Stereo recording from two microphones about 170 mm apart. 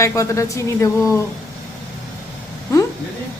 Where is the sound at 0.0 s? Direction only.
15° left (ahead or behind).